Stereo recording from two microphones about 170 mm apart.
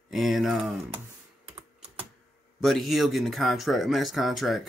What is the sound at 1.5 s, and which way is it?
Typing, 35° right (ahead or behind).